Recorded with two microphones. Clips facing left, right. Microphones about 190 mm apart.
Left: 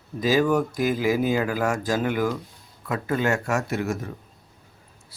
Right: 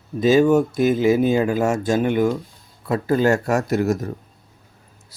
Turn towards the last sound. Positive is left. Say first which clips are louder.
# right 7 dB
turn(degrees=-40)  # may be behind; listen again after turning